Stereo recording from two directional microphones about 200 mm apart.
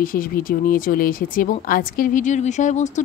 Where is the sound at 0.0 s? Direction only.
45° left (ahead or behind).